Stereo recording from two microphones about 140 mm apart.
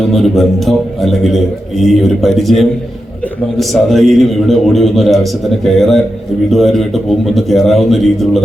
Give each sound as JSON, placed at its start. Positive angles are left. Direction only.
{"t": 0.1, "sound": "a man's voice", "side_deg": 0}